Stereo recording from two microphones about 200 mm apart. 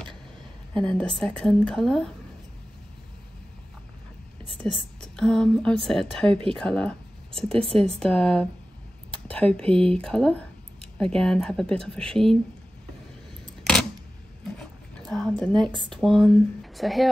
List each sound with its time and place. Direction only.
0.7 s a woman's voice: 5° left (ahead or behind)
4.6 s a woman's voice: centre (ahead or behind)
6.2 s speech: 25° right (ahead or behind)
6.5 s a woman's voice: 5° left (ahead or behind)
14.6 s a sound: 5° left (ahead or behind)
15.9 s a woman's voice: centre (ahead or behind)